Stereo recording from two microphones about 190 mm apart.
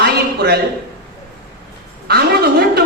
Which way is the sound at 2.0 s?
55° right (ahead or behind).